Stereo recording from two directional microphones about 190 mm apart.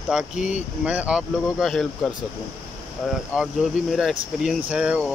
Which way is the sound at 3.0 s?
Centre (ahead or behind).